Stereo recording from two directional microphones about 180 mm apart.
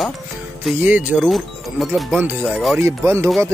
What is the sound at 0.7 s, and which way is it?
Speech, 10° right (ahead or behind).